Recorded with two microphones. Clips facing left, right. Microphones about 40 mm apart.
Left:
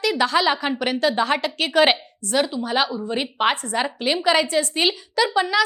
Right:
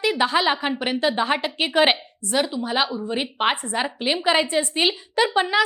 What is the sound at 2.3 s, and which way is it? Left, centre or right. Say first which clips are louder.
A woman's voice: left 1 dB; centre.